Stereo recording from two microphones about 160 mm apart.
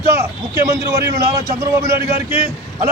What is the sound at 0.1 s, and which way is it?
A man's voice, 20° right (ahead or behind).